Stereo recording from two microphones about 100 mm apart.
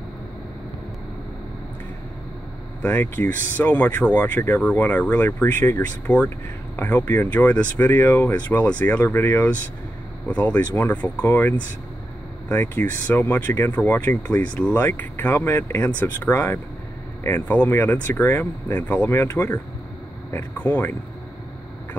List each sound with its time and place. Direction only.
2.8 s speech: 15° left (ahead or behind)